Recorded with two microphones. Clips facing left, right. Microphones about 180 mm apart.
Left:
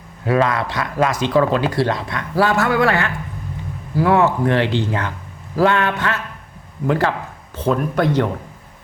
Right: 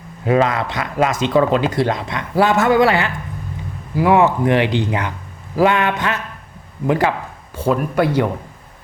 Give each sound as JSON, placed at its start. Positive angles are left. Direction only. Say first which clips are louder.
{"t": 0.3, "sound": "speech", "louder": "right 1 dB", "side_deg": -20}